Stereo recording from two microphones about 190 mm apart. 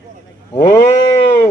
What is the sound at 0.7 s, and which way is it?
Sheep, 15° left (ahead or behind).